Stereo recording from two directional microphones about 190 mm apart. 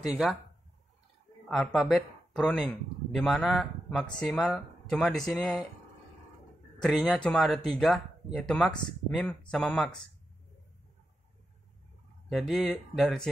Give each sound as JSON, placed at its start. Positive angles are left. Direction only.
{"t": 0.0, "sound": "speech", "side_deg": 0}
{"t": 1.5, "sound": "speech", "side_deg": 0}
{"t": 6.8, "sound": "speech", "side_deg": 0}
{"t": 12.3, "sound": "speech", "side_deg": 0}